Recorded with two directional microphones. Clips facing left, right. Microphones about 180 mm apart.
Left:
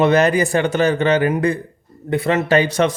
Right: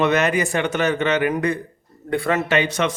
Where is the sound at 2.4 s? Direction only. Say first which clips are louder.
Left 5 dB; 35° left (ahead or behind).